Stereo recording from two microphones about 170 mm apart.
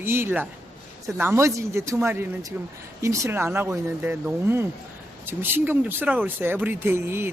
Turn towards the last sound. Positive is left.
turn(degrees=-15)  # may be behind; listen again after turning